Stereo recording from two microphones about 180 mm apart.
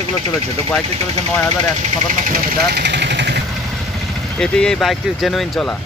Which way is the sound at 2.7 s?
70° right (ahead or behind).